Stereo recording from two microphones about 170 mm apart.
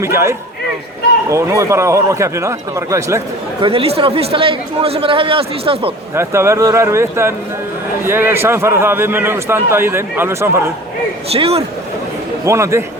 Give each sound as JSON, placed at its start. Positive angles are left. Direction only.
{"t": 0.0, "sound": "a man's voice", "side_deg": -15}
{"t": 3.6, "sound": "speech", "side_deg": -35}
{"t": 6.1, "sound": "a man's voice", "side_deg": -15}
{"t": 11.3, "sound": "speech", "side_deg": -35}
{"t": 12.5, "sound": "a man's voice", "side_deg": -15}